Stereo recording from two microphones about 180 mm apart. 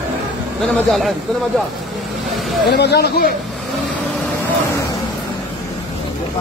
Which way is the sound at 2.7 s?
65° left (ahead or behind).